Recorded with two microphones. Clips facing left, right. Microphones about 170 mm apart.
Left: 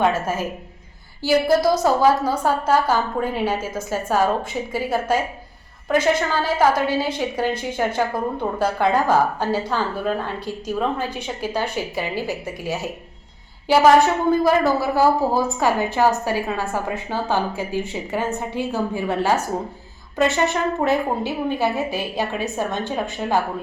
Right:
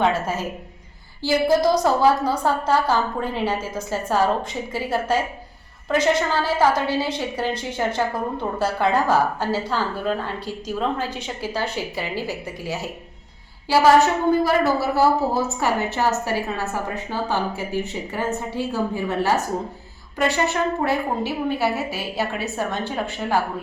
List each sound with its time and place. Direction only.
1.6 s a woman's voice: 10° left (ahead or behind)